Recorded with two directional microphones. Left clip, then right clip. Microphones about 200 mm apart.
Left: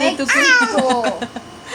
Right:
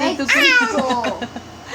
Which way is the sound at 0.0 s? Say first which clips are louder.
Even; 15° left (ahead or behind).